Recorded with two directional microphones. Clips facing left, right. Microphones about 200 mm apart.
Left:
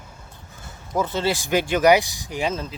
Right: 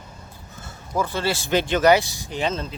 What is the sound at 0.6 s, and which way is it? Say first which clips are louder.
Speech: left 1 dB; 20° left (ahead or behind).